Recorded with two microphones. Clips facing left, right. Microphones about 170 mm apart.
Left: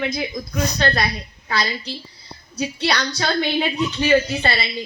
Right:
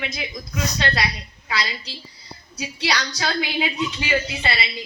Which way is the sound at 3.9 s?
35° left (ahead or behind).